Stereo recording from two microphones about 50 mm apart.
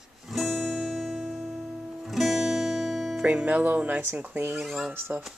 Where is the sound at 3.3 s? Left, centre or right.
Right.